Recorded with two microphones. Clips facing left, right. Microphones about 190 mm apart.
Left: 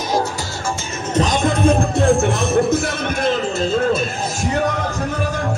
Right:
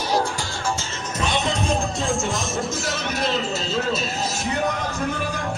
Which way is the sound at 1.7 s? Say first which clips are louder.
Left 9 dB; 60° left (ahead or behind).